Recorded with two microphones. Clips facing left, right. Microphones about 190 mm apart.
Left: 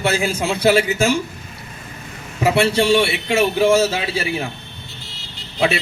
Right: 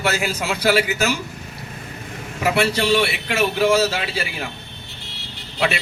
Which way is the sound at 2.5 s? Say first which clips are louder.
Left 3 dB; 25° left (ahead or behind).